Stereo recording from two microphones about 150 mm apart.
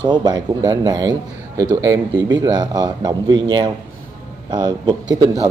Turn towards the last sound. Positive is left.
turn(degrees=-30)  # may be behind; listen again after turning